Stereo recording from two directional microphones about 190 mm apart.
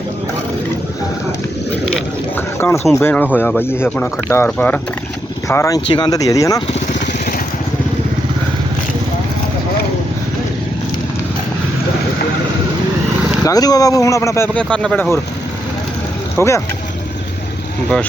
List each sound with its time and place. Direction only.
2.3 s speech: 15° left (ahead or behind)
13.4 s speech: 20° left (ahead or behind)
16.4 s speech: 15° left (ahead or behind)